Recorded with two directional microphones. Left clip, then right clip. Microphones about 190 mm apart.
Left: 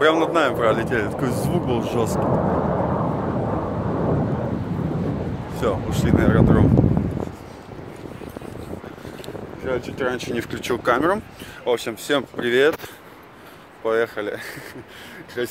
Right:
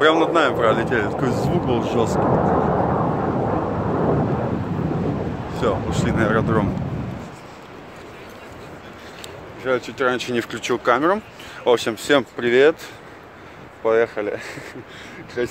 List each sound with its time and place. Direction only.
0.0 s speech: 5° left (ahead or behind)
2.1 s vehicle: 35° right (ahead or behind)
5.5 s speech: 5° left (ahead or behind)
9.7 s speech: 15° right (ahead or behind)
10.6 s speech: 5° right (ahead or behind)
11.6 s speech: 40° right (ahead or behind)
12.4 s speech: 5° right (ahead or behind)
13.8 s speech: 5° right (ahead or behind)